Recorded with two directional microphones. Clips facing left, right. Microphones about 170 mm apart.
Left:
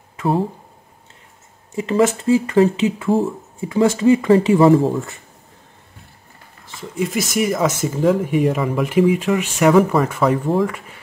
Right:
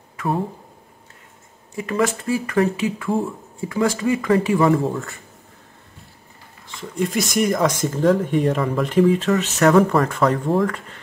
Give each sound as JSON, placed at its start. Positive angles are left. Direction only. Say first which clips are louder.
{"t": 1.8, "sound": "speech", "louder": "left 5 dB", "side_deg": 25}
{"t": 6.8, "sound": "speech", "louder": "left 1 dB", "side_deg": 5}